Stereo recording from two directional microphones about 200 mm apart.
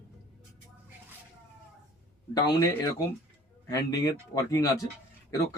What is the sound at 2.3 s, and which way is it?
Speech, 15° left (ahead or behind).